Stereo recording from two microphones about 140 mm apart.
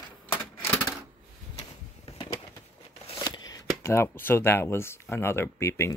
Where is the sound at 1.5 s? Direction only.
45° left (ahead or behind).